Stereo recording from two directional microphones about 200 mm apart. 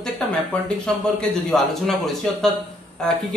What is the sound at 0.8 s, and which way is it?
A man's voice, 5° left (ahead or behind).